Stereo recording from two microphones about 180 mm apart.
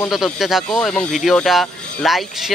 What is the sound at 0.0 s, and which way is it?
Speech, centre (ahead or behind).